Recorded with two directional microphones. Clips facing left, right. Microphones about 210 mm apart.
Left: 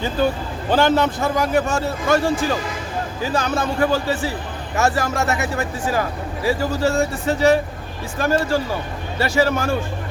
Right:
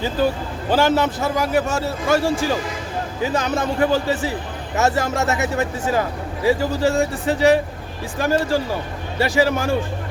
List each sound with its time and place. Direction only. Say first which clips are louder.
0.7 s a man's voice: left 1 dB; 5° right (ahead or behind)